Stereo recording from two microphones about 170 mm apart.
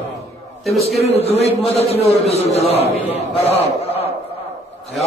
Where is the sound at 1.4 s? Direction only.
35° left (ahead or behind).